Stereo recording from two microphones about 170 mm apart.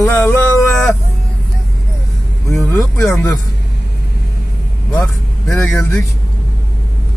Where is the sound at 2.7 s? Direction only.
15° left (ahead or behind).